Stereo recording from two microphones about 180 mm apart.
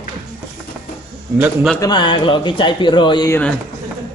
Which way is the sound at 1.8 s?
25° left (ahead or behind).